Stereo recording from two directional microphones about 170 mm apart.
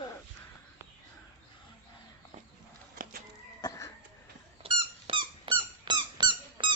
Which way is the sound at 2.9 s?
60° right (ahead or behind).